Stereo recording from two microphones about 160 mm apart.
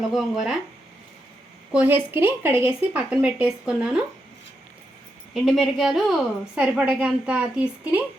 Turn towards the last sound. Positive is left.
turn(degrees=-5)  # may be behind; listen again after turning